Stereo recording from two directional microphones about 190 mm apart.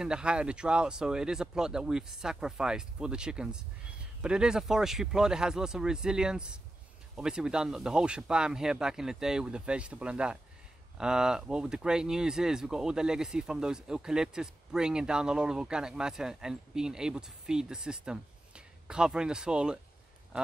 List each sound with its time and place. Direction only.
0.0 s speech: 5° right (ahead or behind)